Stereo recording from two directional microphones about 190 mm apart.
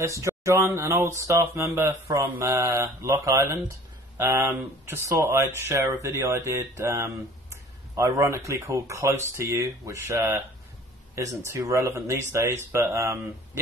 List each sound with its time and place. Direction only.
0.2 s speech: 15° right (ahead or behind)